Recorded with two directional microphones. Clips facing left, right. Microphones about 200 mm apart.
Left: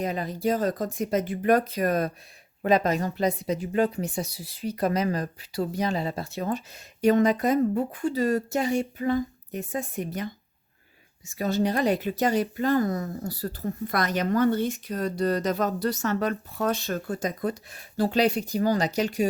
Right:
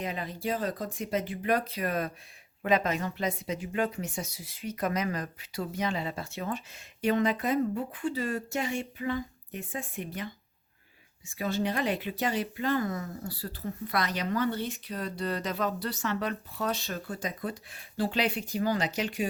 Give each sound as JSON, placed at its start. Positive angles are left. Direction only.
{"t": 0.0, "sound": "speech", "side_deg": 40}
{"t": 11.3, "sound": "speech", "side_deg": 40}